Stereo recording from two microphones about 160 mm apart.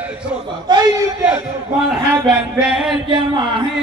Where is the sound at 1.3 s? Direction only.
5° right (ahead or behind).